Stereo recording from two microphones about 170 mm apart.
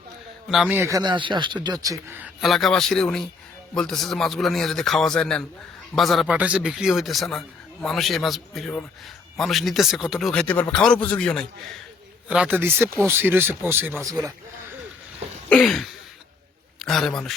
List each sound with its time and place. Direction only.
0.4 s a man's voice: 5° right (ahead or behind)
12.3 s speech: 5° right (ahead or behind)
15.4 s a man's voice: 5° left (ahead or behind)